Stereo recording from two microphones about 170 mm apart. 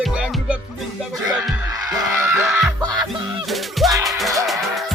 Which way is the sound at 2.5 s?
5° right (ahead or behind).